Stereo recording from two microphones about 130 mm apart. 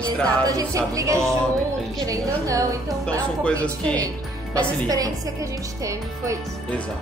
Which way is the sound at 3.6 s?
10° left (ahead or behind).